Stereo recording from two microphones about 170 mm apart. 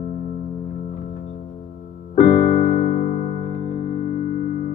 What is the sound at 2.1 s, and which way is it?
Keyboard, 60° left (ahead or behind).